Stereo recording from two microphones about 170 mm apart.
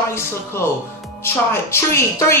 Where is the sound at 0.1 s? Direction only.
15° left (ahead or behind).